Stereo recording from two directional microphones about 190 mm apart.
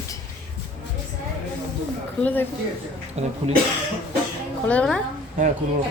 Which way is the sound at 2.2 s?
10° left (ahead or behind).